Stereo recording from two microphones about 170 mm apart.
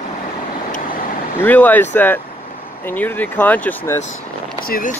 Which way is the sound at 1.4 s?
10° left (ahead or behind).